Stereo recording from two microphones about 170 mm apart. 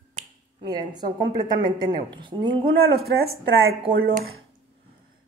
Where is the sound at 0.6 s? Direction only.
25° right (ahead or behind).